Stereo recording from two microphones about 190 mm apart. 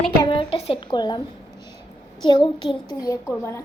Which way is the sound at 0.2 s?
25° left (ahead or behind).